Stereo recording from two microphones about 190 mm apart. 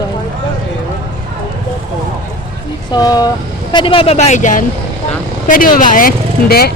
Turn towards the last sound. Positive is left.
turn(degrees=55)  # may be behind; listen again after turning